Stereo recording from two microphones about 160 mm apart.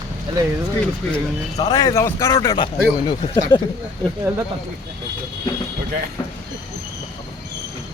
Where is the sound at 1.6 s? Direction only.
25° left (ahead or behind).